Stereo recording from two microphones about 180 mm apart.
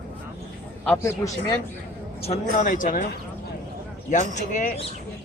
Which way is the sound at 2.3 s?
45° left (ahead or behind).